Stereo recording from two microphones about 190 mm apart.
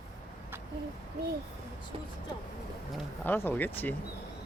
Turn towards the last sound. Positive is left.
turn(degrees=10)  # may be behind; listen again after turning